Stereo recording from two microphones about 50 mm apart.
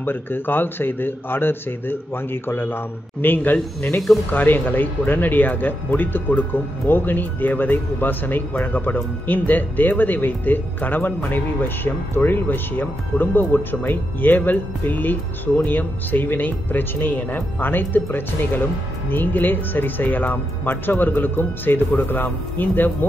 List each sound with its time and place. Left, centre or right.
0.0 s speech: left